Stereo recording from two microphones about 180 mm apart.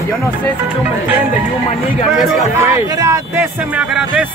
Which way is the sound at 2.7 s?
20° right (ahead or behind).